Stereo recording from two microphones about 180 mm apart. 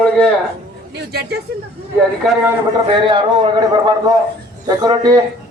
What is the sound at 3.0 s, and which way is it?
A man's voice, 25° right (ahead or behind).